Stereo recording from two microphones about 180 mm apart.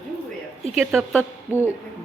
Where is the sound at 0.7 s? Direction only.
Centre (ahead or behind).